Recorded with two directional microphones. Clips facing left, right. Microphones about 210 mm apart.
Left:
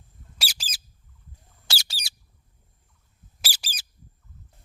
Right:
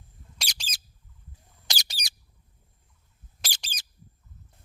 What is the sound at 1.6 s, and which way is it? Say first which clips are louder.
Bird: even; 15° right (ahead or behind).